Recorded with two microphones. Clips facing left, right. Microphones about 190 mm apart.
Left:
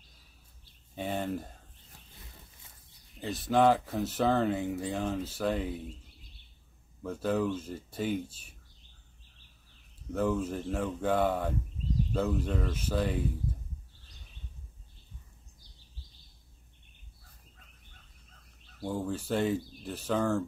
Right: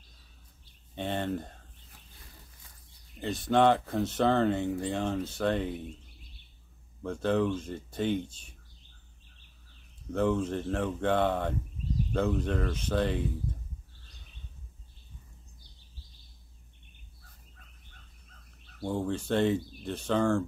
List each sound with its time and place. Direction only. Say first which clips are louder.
0.9 s speech: right 1 dB; 5° left (ahead or behind)
3.2 s speech: right 1 dB; 5° left (ahead or behind)
7.0 s speech: right 2 dB; 5° left (ahead or behind)
10.1 s speech: right 2 dB; 5° left (ahead or behind)
18.9 s speech: right 2 dB; 5° left (ahead or behind)